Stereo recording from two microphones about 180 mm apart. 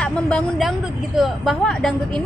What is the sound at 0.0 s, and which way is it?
Speech, 5° left (ahead or behind).